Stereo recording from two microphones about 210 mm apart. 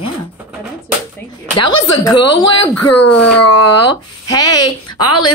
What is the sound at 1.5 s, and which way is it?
Speech, 20° left (ahead or behind).